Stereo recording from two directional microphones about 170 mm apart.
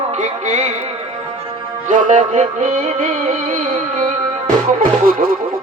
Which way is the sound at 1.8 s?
50° right (ahead or behind).